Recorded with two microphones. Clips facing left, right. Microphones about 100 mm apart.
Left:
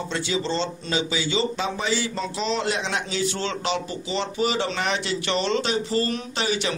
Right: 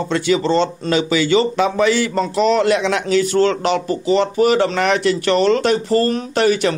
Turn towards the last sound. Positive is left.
turn(degrees=-50)  # may be behind; listen again after turning